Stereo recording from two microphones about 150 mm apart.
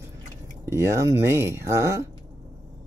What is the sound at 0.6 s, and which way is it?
Speech, 20° right (ahead or behind).